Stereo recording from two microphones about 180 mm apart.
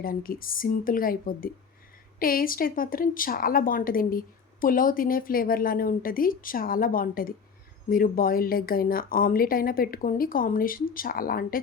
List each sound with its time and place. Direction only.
0.0 s speech: 55° left (ahead or behind)